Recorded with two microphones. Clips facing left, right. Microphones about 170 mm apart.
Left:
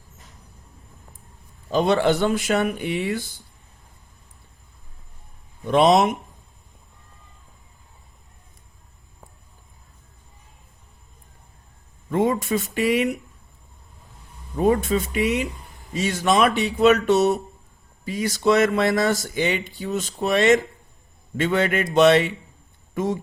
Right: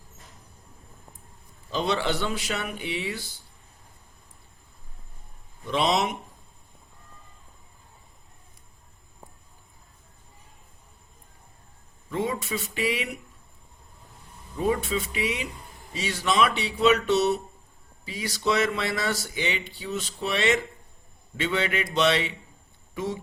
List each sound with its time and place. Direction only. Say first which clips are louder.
1.7 s speech: left 8 dB; 50° left (ahead or behind)
5.6 s speech: left 8 dB; 50° left (ahead or behind)
12.1 s speech: left 8 dB; 50° left (ahead or behind)
14.6 s speech: left 6 dB; 50° left (ahead or behind)